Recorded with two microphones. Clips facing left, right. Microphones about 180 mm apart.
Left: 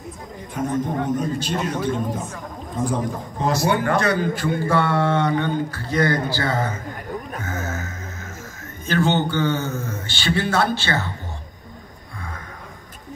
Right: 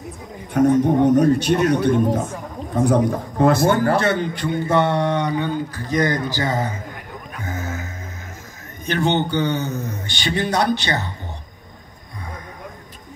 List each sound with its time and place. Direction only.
0.5 s a man's voice: 70° right (ahead or behind); by 3.9 s 45° right (ahead or behind)
3.9 s a man's voice: 30° right (ahead or behind)
7.4 s music: 15° right (ahead or behind)
8.8 s a man's voice: 20° right (ahead or behind)